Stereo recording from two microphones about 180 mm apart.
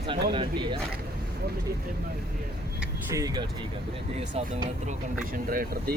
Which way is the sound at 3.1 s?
20° right (ahead or behind).